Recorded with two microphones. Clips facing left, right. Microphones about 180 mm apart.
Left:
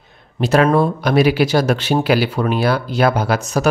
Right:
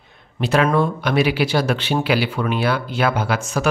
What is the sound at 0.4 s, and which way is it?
A man's voice, 40° left (ahead or behind).